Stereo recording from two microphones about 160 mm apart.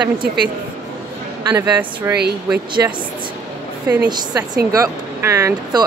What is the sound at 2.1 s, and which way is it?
Speech, 15° right (ahead or behind).